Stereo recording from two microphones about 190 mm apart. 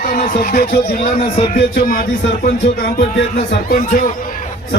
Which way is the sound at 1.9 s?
45° left (ahead or behind).